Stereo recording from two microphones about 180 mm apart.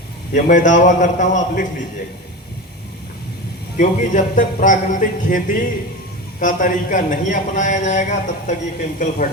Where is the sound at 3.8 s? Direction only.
45° left (ahead or behind).